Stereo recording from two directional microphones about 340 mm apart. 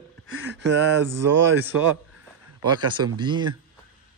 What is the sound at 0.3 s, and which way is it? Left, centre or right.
Speech, right.